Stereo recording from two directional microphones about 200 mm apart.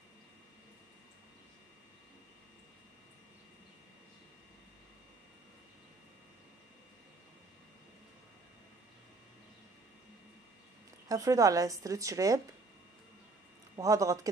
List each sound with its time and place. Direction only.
11.1 s a woman's voice: 15° right (ahead or behind)
13.7 s a woman's voice: 15° right (ahead or behind)